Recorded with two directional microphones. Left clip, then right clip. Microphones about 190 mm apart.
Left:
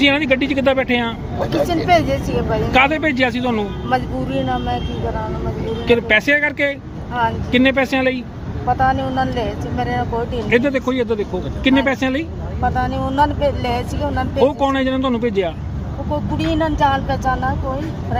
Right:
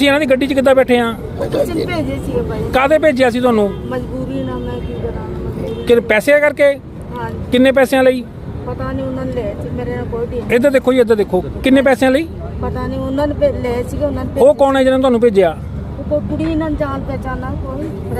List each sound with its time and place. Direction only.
0.0 s speech: 35° right (ahead or behind)
1.6 s speech: 5° left (ahead or behind)
2.7 s speech: 30° right (ahead or behind)
3.8 s speech: 10° left (ahead or behind)
5.9 s speech: 35° right (ahead or behind)
8.8 s speech: 10° left (ahead or behind)
10.5 s speech: 45° right (ahead or behind)
12.6 s speech: centre (ahead or behind)
14.3 s speech: 35° right (ahead or behind)
16.4 s speech: 10° left (ahead or behind)